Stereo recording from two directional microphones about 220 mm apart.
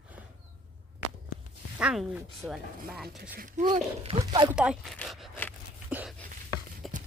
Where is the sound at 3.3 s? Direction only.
40° right (ahead or behind).